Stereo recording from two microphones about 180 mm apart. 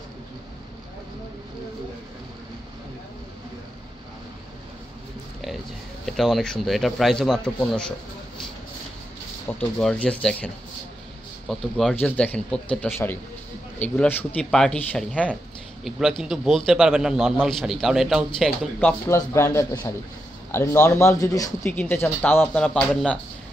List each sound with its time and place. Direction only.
6.0 s a man's voice: centre (ahead or behind)
9.5 s a man's voice: 5° left (ahead or behind)